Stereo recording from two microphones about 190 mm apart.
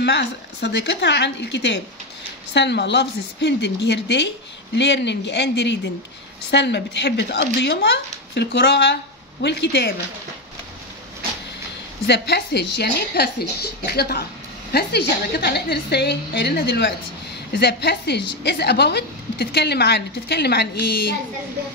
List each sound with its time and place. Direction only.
0.0 s a woman's voice: 60° left (ahead or behind)
12.1 s a woman's voice: 60° left (ahead or behind)